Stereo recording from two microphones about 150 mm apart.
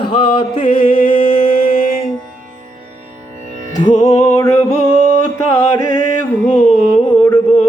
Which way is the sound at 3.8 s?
55° left (ahead or behind).